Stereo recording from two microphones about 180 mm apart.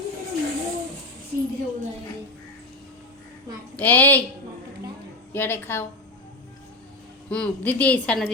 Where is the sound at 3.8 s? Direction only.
10° left (ahead or behind).